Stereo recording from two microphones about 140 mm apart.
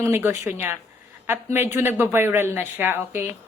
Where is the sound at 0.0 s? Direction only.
15° right (ahead or behind).